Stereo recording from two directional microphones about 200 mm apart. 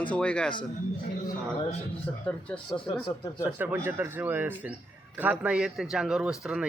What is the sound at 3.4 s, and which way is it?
A man's voice, 10° right (ahead or behind).